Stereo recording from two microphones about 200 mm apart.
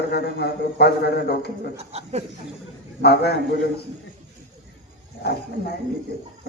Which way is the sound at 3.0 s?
55° left (ahead or behind).